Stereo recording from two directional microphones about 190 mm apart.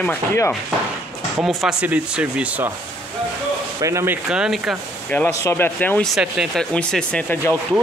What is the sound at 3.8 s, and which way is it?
Speech, 15° right (ahead or behind).